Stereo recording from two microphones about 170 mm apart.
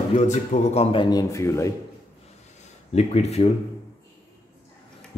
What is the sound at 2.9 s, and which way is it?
Speech, 40° left (ahead or behind).